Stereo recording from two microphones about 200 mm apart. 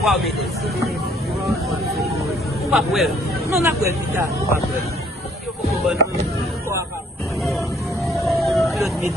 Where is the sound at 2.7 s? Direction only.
Centre (ahead or behind).